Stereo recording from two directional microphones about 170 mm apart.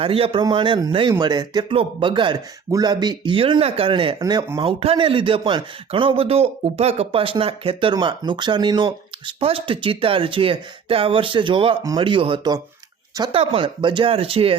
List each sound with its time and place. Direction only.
0.0 s speech: 35° right (ahead or behind)